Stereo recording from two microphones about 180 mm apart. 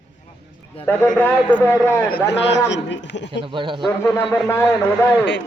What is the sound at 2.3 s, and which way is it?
A man's voice, 80° left.